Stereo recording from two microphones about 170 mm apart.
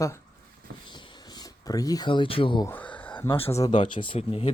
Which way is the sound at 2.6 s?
10° left (ahead or behind).